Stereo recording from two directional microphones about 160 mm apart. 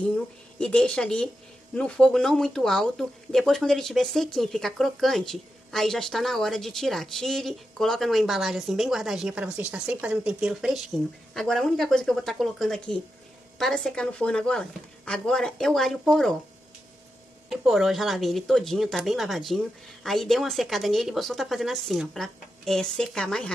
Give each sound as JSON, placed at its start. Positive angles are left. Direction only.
{"t": 0.0, "sound": "speech", "side_deg": 5}
{"t": 17.5, "sound": "speech", "side_deg": 0}